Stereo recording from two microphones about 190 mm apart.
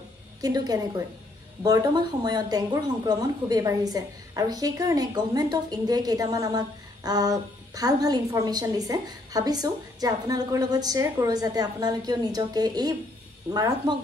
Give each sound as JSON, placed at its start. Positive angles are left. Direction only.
{"t": 0.4, "sound": "a woman's voice", "side_deg": -20}